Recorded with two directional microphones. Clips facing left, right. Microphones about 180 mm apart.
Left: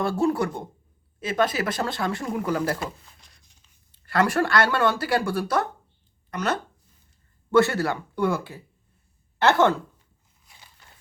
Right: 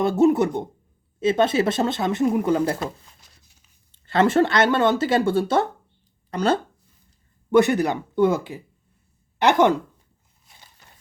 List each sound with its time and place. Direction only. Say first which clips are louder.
0.0 s speech: right 6 dB; 20° right (ahead or behind)
3.2 s a sound: right 1 dB; 5° right (ahead or behind)
3.9 s speech: right 5 dB; 25° right (ahead or behind)
7.5 s speech: right 3 dB; 15° right (ahead or behind)